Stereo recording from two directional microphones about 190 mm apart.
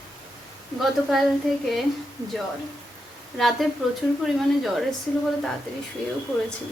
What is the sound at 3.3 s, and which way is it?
A woman's voice, centre (ahead or behind).